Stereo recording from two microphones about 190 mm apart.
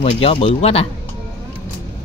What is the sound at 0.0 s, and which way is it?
Speech, 30° left (ahead or behind).